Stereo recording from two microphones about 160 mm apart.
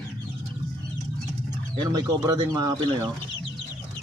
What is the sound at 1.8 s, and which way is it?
Speech, 25° right (ahead or behind).